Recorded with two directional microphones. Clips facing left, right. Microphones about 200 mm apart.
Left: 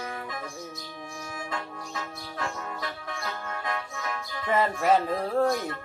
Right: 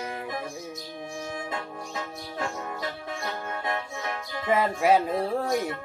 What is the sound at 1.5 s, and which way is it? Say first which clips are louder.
Music: right 1 dB; 20° right (ahead or behind).